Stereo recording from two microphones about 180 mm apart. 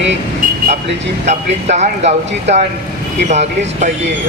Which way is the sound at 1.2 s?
40° right (ahead or behind).